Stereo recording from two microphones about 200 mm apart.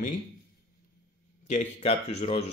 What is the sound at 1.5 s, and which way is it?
Speech, 35° left (ahead or behind).